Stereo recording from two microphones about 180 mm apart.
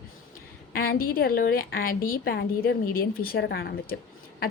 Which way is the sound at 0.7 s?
55° left (ahead or behind).